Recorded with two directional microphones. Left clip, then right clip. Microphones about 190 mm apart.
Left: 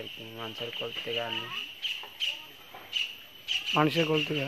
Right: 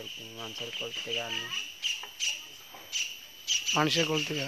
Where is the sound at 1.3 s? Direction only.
25° left (ahead or behind).